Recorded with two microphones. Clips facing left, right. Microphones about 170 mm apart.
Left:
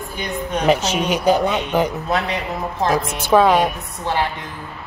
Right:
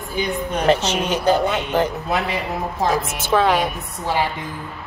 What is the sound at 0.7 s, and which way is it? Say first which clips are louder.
Speech: left 1 dB; 10° left (ahead or behind).